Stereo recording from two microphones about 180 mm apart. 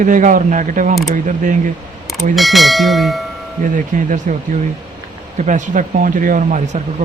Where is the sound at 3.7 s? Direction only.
45° right (ahead or behind).